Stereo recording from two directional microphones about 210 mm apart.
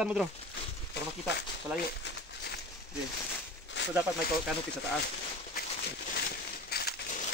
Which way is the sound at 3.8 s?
55° left (ahead or behind).